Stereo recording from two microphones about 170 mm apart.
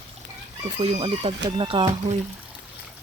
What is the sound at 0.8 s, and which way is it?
Speech, 35° right (ahead or behind).